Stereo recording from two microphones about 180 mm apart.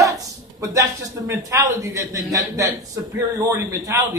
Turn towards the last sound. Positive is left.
turn(degrees=-20)  # may be behind; listen again after turning